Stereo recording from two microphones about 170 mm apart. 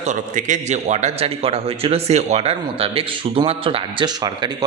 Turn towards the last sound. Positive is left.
turn(degrees=-25)  # may be behind; listen again after turning